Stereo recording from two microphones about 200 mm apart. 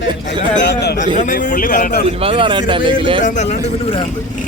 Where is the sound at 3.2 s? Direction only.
40° left (ahead or behind).